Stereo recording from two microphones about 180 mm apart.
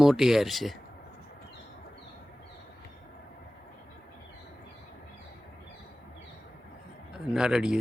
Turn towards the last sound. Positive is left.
turn(degrees=-5)  # may be behind; listen again after turning